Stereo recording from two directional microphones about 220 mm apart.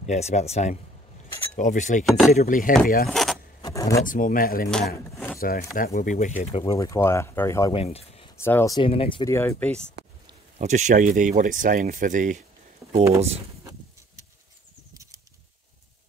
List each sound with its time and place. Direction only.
0.0 s speech: 30° left (ahead or behind)
2.0 s speech: centre (ahead or behind)
2.3 s speech: 35° left (ahead or behind)
3.1 s vehicle: centre (ahead or behind)
3.6 s speech: 15° left (ahead or behind)
4.0 s speech: 40° left (ahead or behind)
4.6 s a sound: 5° left (ahead or behind)
5.4 s speech: 40° left (ahead or behind)
6.6 s speech: 15° left (ahead or behind)
7.7 s speech: 25° left (ahead or behind)
8.4 s speech: 10° left (ahead or behind)
9.3 s speech: 10° left (ahead or behind)
10.6 s speech: 35° right (ahead or behind)
12.8 s a sound: centre (ahead or behind)